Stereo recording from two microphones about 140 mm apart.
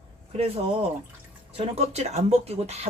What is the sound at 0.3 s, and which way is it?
Speech, 45° right (ahead or behind).